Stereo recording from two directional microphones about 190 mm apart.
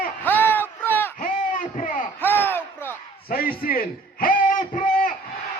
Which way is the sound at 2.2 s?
10° left (ahead or behind).